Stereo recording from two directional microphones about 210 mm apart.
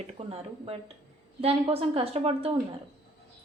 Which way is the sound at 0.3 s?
25° right (ahead or behind).